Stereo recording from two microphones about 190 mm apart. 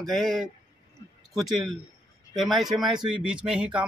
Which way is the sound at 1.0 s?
20° left (ahead or behind).